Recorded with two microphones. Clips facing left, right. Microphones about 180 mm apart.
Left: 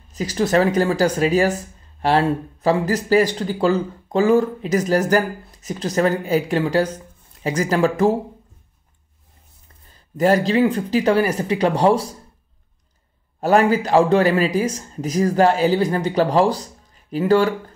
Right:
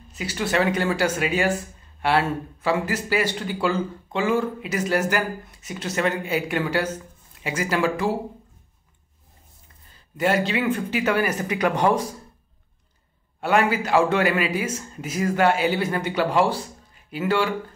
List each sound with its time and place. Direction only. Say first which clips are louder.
0.1 s speech: left 6 dB; 40° left (ahead or behind)
10.1 s speech: left 6 dB; 40° left (ahead or behind)
13.4 s speech: left 5 dB; 35° left (ahead or behind)